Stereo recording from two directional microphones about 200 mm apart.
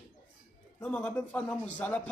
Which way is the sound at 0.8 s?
5° left (ahead or behind).